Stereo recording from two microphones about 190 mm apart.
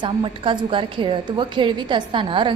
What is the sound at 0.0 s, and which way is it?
A woman's voice, 25° right (ahead or behind).